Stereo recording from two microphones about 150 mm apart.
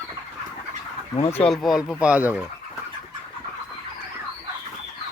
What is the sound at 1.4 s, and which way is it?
Speech, centre (ahead or behind).